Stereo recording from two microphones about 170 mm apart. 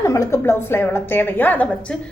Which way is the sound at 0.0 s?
15° left (ahead or behind).